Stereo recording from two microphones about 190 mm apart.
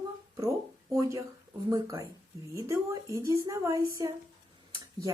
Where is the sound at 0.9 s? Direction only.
15° right (ahead or behind).